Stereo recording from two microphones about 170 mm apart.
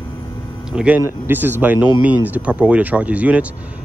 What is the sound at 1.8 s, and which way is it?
Speech, 25° left (ahead or behind).